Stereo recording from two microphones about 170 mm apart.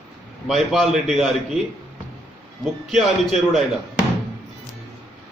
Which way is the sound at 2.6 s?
Centre (ahead or behind).